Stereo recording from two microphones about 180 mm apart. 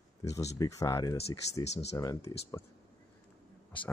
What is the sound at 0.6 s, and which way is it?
Speech, 15° left (ahead or behind).